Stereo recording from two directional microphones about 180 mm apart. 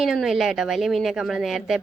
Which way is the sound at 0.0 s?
Centre (ahead or behind).